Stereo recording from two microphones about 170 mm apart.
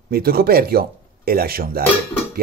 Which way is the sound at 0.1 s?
65° right (ahead or behind).